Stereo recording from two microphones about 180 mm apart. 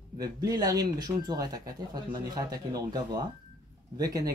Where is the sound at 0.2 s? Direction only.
20° right (ahead or behind).